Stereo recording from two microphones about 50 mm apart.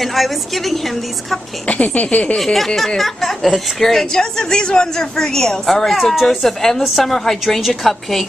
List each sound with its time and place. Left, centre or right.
0.0 s a woman's voice: centre
1.7 s speech: left
2.3 s a woman's voice: centre